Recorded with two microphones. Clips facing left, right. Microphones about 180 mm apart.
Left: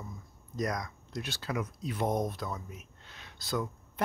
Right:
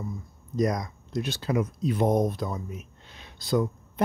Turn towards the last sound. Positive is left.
turn(degrees=-20)  # may be behind; listen again after turning